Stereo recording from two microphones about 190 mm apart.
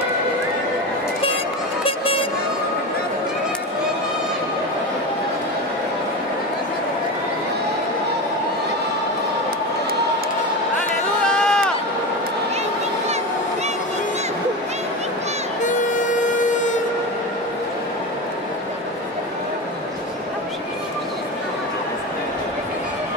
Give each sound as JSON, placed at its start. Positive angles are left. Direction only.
{"t": 1.9, "sound": "music", "side_deg": 30}
{"t": 11.2, "sound": "run", "side_deg": 5}